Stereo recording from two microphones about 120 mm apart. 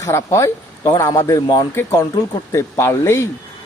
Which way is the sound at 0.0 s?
25° left (ahead or behind).